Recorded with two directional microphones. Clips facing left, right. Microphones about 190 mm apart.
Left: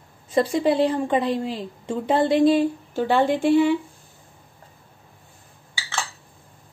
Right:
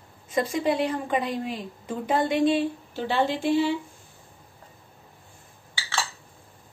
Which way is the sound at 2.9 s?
50° left (ahead or behind).